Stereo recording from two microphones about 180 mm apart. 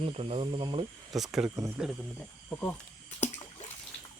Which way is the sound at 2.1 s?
10° left (ahead or behind).